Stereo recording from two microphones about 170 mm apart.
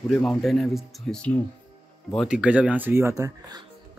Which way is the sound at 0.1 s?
5° left (ahead or behind).